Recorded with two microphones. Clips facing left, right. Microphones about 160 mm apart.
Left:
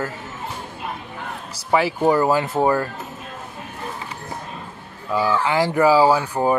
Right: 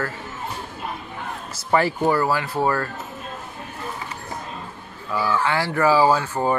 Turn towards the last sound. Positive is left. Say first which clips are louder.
# left 2 dB
turn(degrees=15)  # may be behind; listen again after turning